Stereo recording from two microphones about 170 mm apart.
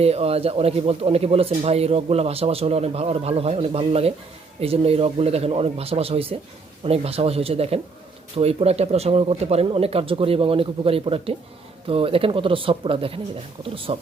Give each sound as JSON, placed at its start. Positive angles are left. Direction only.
{"t": 0.0, "sound": "speech", "side_deg": -35}